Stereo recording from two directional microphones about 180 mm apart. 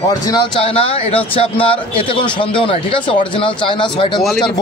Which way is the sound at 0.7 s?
30° left (ahead or behind).